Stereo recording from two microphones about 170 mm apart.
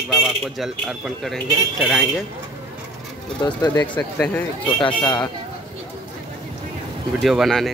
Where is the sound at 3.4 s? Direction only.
25° left (ahead or behind).